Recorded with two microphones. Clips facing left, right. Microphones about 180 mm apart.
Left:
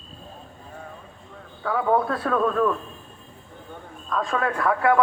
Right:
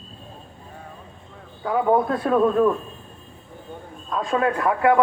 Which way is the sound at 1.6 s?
20° right (ahead or behind).